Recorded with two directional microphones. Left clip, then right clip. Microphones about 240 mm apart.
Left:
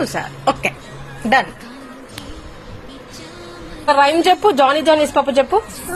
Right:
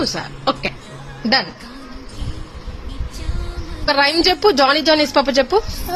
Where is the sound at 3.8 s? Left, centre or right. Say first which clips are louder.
Left 3 dB; right.